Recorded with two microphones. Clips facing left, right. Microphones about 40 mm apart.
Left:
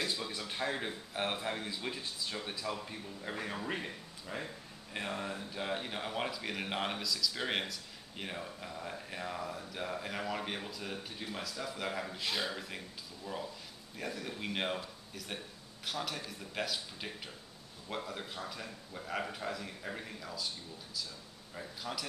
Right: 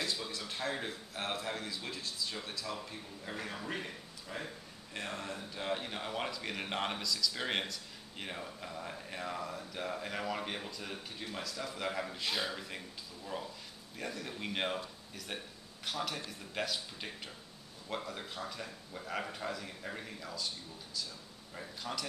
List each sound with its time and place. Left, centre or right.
0.0 s a sound: centre
0.5 s a man's voice: centre
21.5 s speech: centre